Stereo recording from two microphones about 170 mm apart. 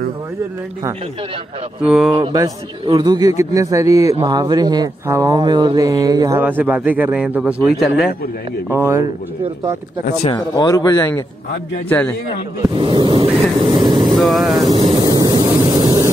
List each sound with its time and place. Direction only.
1.8 s a man's voice: 5° right (ahead or behind)
2.1 s speech: 25° right (ahead or behind)
6.4 s a man's voice: 10° right (ahead or behind)
8.6 s a man's voice: 15° right (ahead or behind)
10.2 s speech: 25° left (ahead or behind)
11.9 s a man's voice: 10° left (ahead or behind)
12.7 s speech: 30° right (ahead or behind)
13.7 s vehicle: 30° right (ahead or behind)
14.0 s speech: centre (ahead or behind)
15.0 s vehicle: 25° right (ahead or behind)